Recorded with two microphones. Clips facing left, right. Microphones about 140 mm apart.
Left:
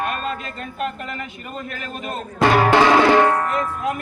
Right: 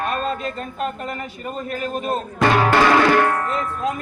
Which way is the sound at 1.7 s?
40° right (ahead or behind).